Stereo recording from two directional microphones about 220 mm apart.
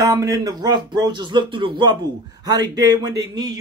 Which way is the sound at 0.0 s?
15° right (ahead or behind).